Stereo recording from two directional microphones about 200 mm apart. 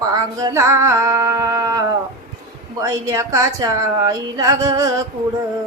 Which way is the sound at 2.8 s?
15° right (ahead or behind).